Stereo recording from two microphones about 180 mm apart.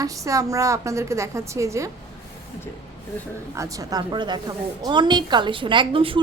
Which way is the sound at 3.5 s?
20° right (ahead or behind).